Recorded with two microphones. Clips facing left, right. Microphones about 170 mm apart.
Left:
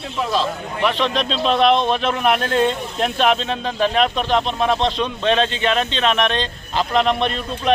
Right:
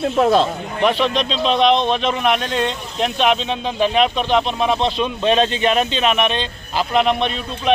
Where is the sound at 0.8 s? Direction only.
10° right (ahead or behind).